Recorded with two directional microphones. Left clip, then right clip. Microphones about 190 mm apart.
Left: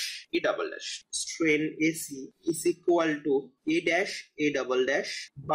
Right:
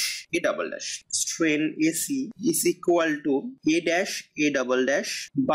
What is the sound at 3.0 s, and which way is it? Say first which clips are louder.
Speech: right 2 dB; 40° right (ahead or behind).